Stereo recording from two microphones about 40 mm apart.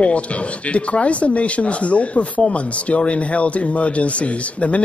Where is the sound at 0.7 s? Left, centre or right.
Left.